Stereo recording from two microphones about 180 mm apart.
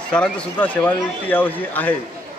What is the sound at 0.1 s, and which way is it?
A man's voice, 5° left (ahead or behind).